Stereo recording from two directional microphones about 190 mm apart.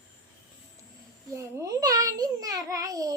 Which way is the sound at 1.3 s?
15° right (ahead or behind).